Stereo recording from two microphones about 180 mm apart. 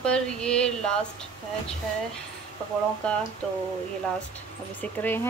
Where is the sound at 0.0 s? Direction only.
5° left (ahead or behind).